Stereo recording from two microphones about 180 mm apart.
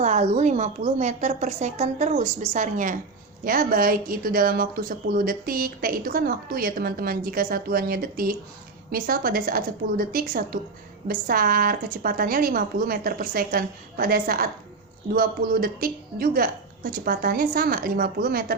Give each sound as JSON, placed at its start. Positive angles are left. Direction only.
{"t": 0.0, "sound": "a woman's voice", "side_deg": -40}